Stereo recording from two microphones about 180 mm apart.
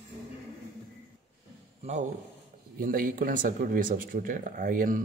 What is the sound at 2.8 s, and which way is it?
Speech, 50° right (ahead or behind).